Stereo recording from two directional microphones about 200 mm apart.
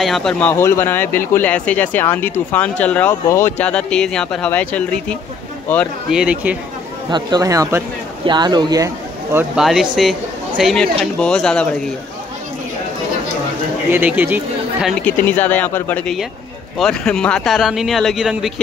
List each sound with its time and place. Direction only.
0.0 s speech: centre (ahead or behind)
6.1 s speech: 5° right (ahead or behind)
7.1 s a man's voice: 20° right (ahead or behind); by 11.7 s 5° left (ahead or behind)
13.9 s a man's voice: 10° right (ahead or behind)
15.0 s speech: 10° left (ahead or behind)